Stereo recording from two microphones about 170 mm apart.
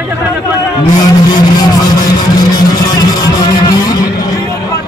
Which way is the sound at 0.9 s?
25° left (ahead or behind).